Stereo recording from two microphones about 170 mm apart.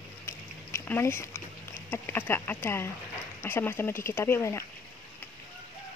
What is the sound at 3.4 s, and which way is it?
Speech, 15° left (ahead or behind).